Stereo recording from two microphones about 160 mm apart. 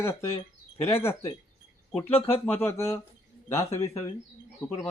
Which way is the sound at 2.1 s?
40° left (ahead or behind).